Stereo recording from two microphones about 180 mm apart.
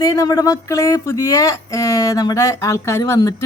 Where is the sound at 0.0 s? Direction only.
20° left (ahead or behind).